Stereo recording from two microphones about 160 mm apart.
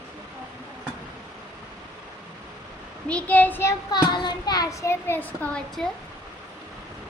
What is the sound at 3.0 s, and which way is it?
Speech, 10° left (ahead or behind).